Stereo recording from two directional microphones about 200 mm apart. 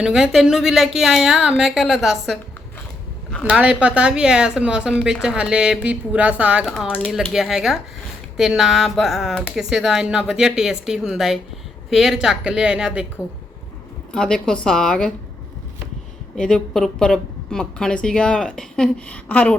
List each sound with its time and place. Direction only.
0.0 s speech: 5° right (ahead or behind)
14.1 s speech: 5° left (ahead or behind)
16.3 s speech: 5° left (ahead or behind)